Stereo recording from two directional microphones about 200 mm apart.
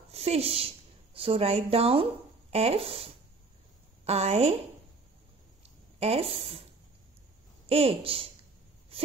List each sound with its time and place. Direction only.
0.1 s a woman's voice: 30° right (ahead or behind)
5.6 s a sound: 30° right (ahead or behind)
7.6 s speech: 30° right (ahead or behind)